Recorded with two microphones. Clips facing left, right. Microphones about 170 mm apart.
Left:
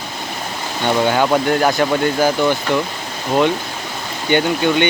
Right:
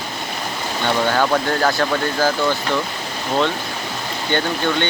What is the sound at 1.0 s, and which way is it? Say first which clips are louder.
Speech: left 3 dB; 15° left (ahead or behind).